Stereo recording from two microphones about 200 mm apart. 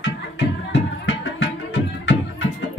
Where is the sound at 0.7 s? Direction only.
70° left (ahead or behind).